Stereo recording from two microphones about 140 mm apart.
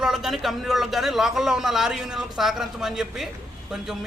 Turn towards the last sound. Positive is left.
turn(degrees=-5)  # may be behind; listen again after turning